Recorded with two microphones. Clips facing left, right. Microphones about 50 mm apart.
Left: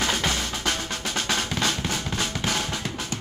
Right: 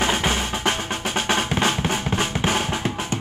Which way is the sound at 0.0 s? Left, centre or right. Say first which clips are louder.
Right 4 dB; right.